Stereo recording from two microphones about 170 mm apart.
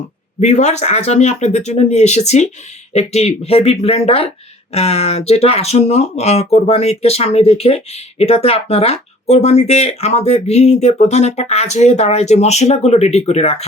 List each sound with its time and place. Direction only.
0.3 s speech: 40° left (ahead or behind)